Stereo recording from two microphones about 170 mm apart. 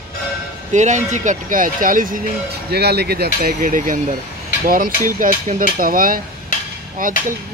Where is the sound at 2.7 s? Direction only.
75° right (ahead or behind).